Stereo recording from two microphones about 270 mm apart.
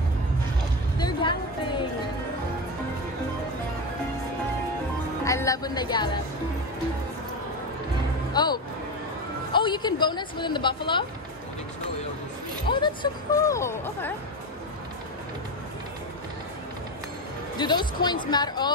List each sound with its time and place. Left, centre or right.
0.9 s music: centre
5.2 s music: centre
8.3 s music: centre
9.5 s speech: centre
12.6 s speech: centre
17.6 s a woman's voice: centre